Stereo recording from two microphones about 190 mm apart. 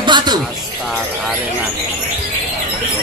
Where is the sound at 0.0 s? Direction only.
25° right (ahead or behind).